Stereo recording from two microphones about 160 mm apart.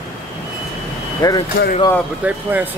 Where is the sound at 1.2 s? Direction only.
25° left (ahead or behind).